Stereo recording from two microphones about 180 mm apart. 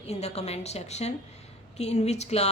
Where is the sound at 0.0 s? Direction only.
35° left (ahead or behind).